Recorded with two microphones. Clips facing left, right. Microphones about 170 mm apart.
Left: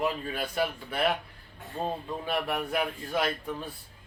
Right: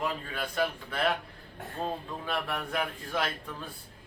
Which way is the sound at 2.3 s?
15° left (ahead or behind).